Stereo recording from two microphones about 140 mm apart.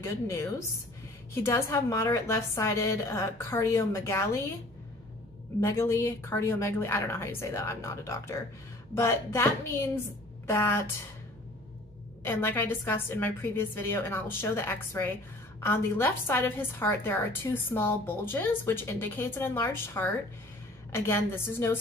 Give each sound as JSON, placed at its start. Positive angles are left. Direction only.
{"t": 0.0, "sound": "a woman's voice", "side_deg": 20}
{"t": 5.6, "sound": "a woman's voice", "side_deg": 20}
{"t": 12.3, "sound": "a woman's voice", "side_deg": 15}